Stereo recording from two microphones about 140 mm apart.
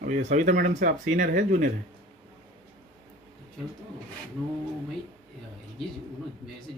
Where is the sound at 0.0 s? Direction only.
60° right (ahead or behind).